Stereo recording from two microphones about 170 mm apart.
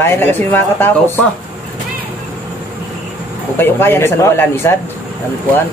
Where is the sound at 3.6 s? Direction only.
15° left (ahead or behind).